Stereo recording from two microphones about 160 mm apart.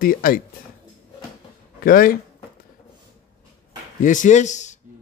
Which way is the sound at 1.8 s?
60° left (ahead or behind).